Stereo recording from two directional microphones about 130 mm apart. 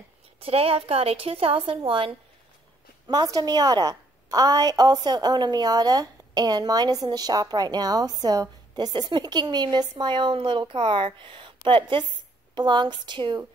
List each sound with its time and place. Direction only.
0.4 s a woman's voice: 45° right (ahead or behind)
3.1 s a woman's voice: 30° right (ahead or behind)